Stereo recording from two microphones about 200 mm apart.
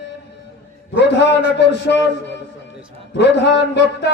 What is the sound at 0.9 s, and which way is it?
A man's voice, 60° left (ahead or behind).